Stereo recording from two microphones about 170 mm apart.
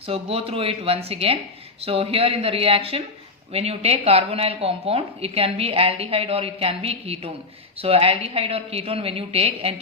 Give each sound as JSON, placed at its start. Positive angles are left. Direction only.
{"t": 0.0, "sound": "a woman's voice", "side_deg": -35}